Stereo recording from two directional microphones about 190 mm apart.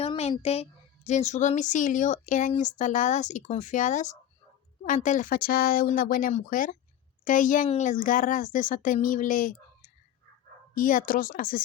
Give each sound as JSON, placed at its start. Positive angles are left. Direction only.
{"t": 0.0, "sound": "a woman's voice", "side_deg": 35}